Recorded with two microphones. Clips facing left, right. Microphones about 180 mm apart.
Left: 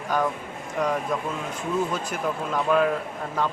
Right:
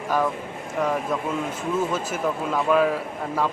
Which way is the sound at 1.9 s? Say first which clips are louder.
Right 2 dB; 5° right (ahead or behind).